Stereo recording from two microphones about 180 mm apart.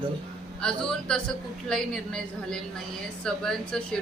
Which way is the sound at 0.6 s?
5° left (ahead or behind).